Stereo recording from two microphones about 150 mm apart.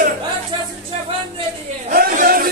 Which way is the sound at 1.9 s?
70° right (ahead or behind).